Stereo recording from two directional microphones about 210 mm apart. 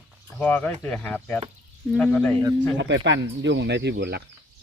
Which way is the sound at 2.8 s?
60° right (ahead or behind).